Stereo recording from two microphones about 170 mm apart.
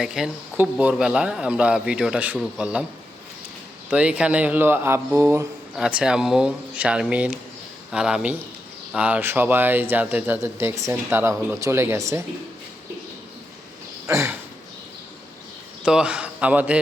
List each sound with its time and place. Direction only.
0.0 s speech: 5° right (ahead or behind)
3.8 s speech: 5° right (ahead or behind)
5.7 s speech: 5° right (ahead or behind)
14.1 s speech: 15° right (ahead or behind)
15.8 s a man's voice: 5° right (ahead or behind)